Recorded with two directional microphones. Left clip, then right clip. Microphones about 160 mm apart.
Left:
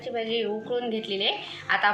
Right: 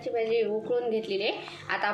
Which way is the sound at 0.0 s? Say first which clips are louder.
Right 1 dB; 60° right (ahead or behind).